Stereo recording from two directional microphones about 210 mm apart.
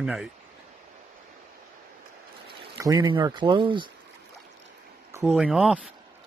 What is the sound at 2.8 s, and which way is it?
Speech, 20° right (ahead or behind).